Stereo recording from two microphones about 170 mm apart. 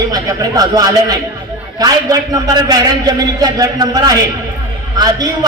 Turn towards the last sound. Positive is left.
turn(degrees=-20)  # may be behind; listen again after turning